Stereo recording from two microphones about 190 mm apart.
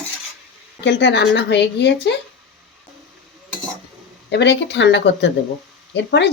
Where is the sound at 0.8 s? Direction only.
65° left (ahead or behind).